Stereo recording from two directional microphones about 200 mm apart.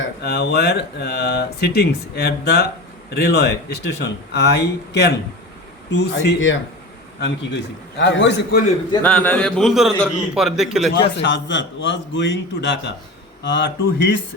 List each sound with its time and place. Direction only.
0.2 s speech: 55° left (ahead or behind)
9.0 s a man's voice: 10° left (ahead or behind)
10.9 s speech: 60° left (ahead or behind)